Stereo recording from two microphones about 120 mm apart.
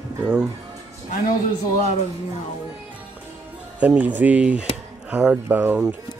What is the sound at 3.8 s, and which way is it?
Speech, 10° right (ahead or behind).